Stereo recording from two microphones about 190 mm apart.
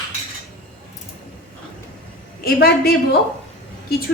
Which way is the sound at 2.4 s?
55° left (ahead or behind).